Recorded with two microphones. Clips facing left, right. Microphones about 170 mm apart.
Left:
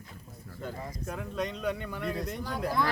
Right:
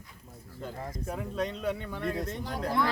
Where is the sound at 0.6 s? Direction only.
5° right (ahead or behind).